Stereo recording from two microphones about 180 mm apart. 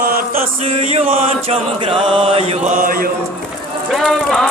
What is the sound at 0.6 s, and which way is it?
Mantra, 35° right (ahead or behind).